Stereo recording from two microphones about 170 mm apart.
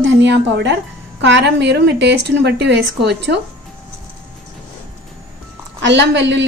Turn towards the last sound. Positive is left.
turn(degrees=-90)